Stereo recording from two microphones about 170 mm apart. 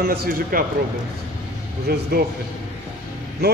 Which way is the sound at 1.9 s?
65° right (ahead or behind).